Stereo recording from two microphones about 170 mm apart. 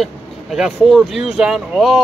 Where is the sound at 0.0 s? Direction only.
5° right (ahead or behind).